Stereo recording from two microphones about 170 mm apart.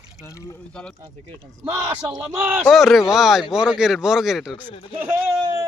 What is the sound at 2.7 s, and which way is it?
Speech, centre (ahead or behind).